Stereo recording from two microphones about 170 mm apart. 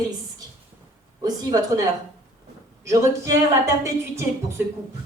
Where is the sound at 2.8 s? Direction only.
15° right (ahead or behind).